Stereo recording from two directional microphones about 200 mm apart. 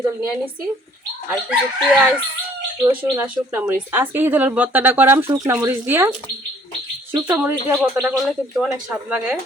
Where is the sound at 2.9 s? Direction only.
10° right (ahead or behind).